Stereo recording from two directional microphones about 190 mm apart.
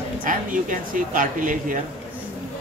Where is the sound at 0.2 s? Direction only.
45° right (ahead or behind).